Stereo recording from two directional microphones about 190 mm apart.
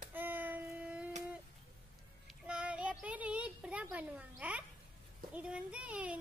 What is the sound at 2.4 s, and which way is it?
A child's voice, 5° right (ahead or behind).